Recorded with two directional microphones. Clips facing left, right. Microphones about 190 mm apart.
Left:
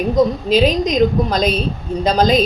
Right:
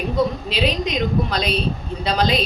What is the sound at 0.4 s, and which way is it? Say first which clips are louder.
A woman's voice: left 7 dB; 45° left (ahead or behind).